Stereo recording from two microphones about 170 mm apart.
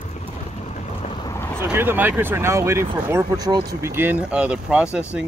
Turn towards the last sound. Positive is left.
turn(degrees=-5)  # may be behind; listen again after turning